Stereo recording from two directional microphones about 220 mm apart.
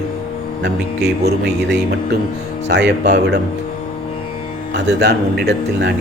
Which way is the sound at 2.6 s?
50° right (ahead or behind).